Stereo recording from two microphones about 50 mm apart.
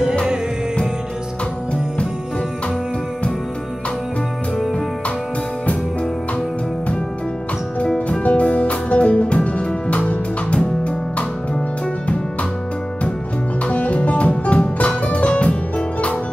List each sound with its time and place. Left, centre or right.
8.1 s music: left
13.7 s music: left